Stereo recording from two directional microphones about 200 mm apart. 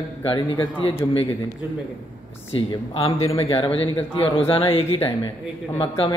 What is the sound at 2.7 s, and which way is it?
Speech, 30° left (ahead or behind).